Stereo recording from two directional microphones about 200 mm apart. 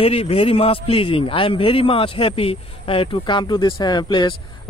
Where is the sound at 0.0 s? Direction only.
30° left (ahead or behind).